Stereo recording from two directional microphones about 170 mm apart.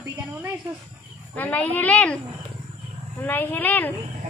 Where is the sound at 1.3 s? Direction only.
10° left (ahead or behind).